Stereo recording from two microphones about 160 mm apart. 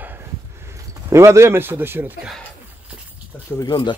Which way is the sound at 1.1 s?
20° right (ahead or behind).